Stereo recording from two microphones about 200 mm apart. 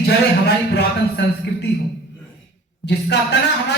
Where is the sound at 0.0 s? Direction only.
55° left (ahead or behind).